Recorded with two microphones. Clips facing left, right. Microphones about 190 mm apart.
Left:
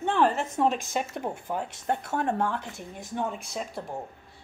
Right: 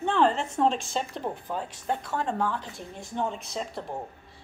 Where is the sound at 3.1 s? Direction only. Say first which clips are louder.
Right 1 dB; 5° left (ahead or behind).